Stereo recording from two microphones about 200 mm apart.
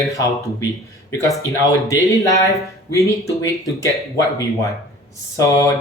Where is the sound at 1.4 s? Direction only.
15° left (ahead or behind).